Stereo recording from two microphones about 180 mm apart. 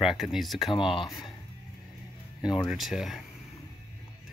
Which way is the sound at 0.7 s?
30° left (ahead or behind).